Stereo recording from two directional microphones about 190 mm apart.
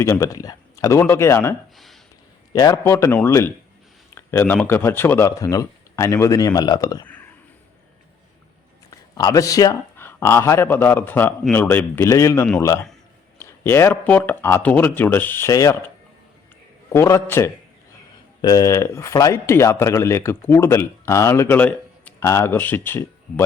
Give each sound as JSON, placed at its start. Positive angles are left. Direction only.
{"t": 0.0, "sound": "speech", "side_deg": 15}
{"t": 1.7, "sound": "a sound", "side_deg": 0}
{"t": 2.5, "sound": "speech", "side_deg": 20}
{"t": 8.9, "sound": "a man's voice", "side_deg": 20}
{"t": 16.9, "sound": "speech", "side_deg": 15}